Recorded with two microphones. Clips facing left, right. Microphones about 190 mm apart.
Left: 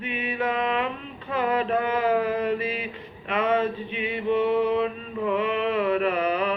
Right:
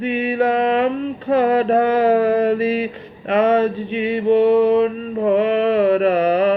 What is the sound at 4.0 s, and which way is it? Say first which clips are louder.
Speech: right 9 dB; 35° right (ahead or behind).